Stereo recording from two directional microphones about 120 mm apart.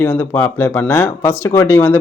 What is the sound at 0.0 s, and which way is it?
A man's voice, 15° left (ahead or behind).